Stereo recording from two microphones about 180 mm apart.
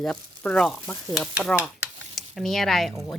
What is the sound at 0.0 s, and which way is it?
Speech, 5° left (ahead or behind).